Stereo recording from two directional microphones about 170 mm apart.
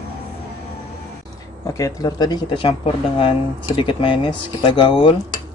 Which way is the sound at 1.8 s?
20° left (ahead or behind).